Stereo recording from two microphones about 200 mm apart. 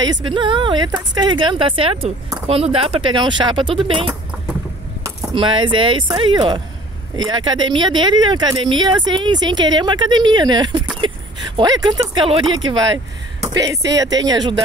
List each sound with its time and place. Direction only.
0.0 s speech: 20° right (ahead or behind)